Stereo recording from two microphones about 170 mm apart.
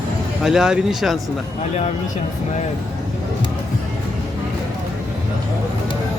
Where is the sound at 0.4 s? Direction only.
5° right (ahead or behind).